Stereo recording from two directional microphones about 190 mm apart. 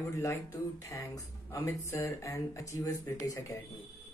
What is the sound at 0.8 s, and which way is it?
Speech, 15° left (ahead or behind).